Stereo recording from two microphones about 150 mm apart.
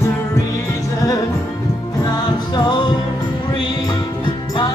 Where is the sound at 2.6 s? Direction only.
30° left (ahead or behind).